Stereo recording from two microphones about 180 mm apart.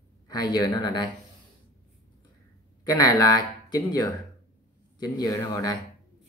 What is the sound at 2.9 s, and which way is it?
Speech, 20° left (ahead or behind).